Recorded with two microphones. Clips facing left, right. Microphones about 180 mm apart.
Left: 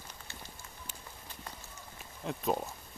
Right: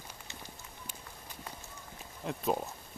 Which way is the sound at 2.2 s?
Centre (ahead or behind).